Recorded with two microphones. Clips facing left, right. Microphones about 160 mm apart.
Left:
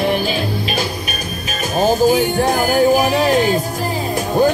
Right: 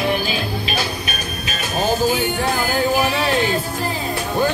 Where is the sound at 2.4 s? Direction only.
15° left (ahead or behind).